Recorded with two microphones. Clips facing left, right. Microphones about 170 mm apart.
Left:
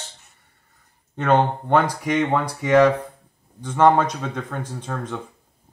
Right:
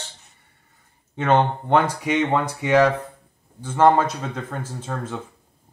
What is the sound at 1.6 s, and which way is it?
Speech, 10° right (ahead or behind).